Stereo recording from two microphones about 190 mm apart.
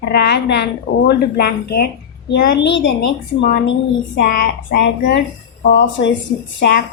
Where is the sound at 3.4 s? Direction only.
50° left (ahead or behind).